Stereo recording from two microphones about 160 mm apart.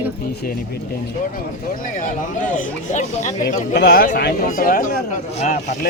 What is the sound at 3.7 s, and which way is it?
Speech, 80° left.